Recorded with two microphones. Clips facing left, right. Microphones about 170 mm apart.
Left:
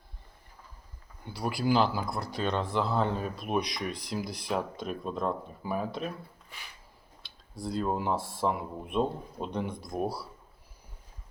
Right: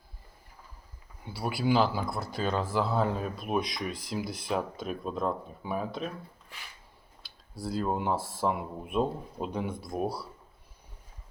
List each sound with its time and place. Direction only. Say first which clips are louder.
1.2 s speech: even; 5° right (ahead or behind)
7.2 s speech: even; 5° right (ahead or behind)